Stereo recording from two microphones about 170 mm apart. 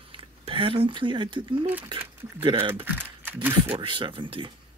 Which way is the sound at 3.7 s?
30° right (ahead or behind).